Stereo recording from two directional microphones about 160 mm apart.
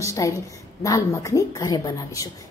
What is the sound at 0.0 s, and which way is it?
A woman's voice, 20° left (ahead or behind).